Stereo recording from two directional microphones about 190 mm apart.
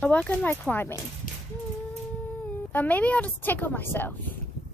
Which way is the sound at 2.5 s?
10° left (ahead or behind).